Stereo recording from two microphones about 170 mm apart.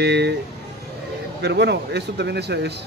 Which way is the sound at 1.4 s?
80° right.